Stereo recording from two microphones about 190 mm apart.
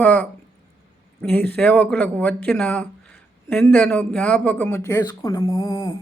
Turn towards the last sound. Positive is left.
turn(degrees=15)  # may be behind; listen again after turning